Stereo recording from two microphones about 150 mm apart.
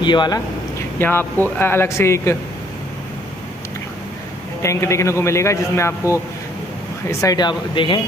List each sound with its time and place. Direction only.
0.0 s a sound: 30° left (ahead or behind)
0.9 s speech: 15° left (ahead or behind)
4.6 s a man's voice: 20° left (ahead or behind)